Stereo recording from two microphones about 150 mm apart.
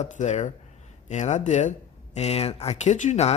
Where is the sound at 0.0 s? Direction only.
50° left (ahead or behind).